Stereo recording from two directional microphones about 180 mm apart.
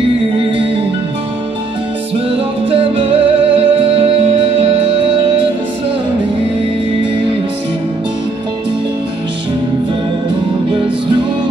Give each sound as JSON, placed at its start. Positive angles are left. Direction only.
{"t": 2.7, "sound": "music", "side_deg": -30}